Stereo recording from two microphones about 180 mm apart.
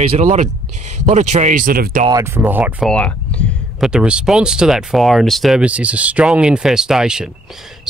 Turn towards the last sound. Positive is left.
turn(degrees=-5)  # may be behind; listen again after turning